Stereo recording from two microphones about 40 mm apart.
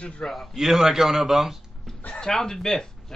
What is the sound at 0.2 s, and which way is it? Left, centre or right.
Speech, centre.